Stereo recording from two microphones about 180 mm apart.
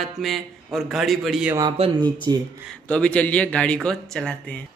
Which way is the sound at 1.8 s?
25° right (ahead or behind).